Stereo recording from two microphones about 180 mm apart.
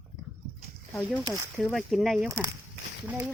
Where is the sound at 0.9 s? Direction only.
5° left (ahead or behind).